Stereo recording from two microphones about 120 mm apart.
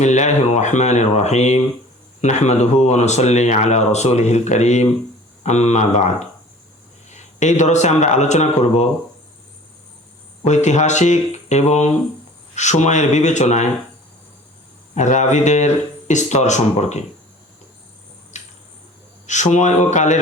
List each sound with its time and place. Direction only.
0.0 s speech: 75° left (ahead or behind)
10.4 s speech: 70° left (ahead or behind)
14.9 s speech: 85° left
18.3 s cricket: 80° left
19.3 s speech: 80° left